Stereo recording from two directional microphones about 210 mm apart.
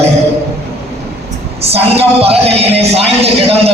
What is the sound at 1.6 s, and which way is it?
A man's voice, 30° right (ahead or behind).